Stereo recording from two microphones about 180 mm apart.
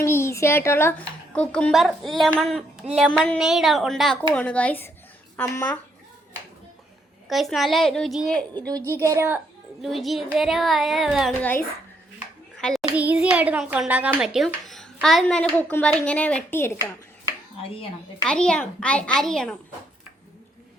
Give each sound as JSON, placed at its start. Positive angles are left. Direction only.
{"t": 0.0, "sound": "a child's voice", "side_deg": 15}
{"t": 7.3, "sound": "a child's voice", "side_deg": 0}
{"t": 9.0, "sound": "a woman's voice", "side_deg": -15}
{"t": 9.8, "sound": "a child's voice", "side_deg": 0}
{"t": 12.5, "sound": "child singing", "side_deg": 0}
{"t": 13.0, "sound": "a child's voice", "side_deg": -10}
{"t": 18.3, "sound": "a child's voice", "side_deg": 5}